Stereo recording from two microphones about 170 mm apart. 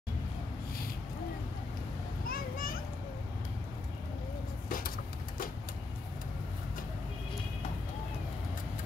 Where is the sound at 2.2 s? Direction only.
60° left (ahead or behind).